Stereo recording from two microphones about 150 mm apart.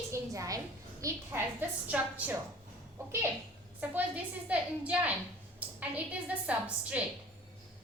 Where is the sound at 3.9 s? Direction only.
10° right (ahead or behind).